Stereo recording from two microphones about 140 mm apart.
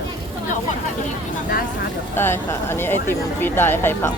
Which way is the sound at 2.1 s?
15° left (ahead or behind).